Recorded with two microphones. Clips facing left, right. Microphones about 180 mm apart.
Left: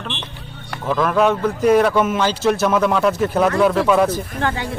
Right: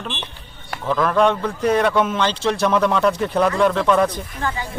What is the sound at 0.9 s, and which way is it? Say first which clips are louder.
Speech: left 1 dB; 5° left (ahead or behind).